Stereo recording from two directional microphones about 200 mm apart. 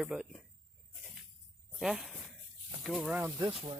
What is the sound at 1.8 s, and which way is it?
Speech, 5° right (ahead or behind).